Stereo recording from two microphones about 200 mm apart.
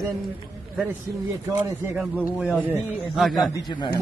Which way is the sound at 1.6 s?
5° right (ahead or behind).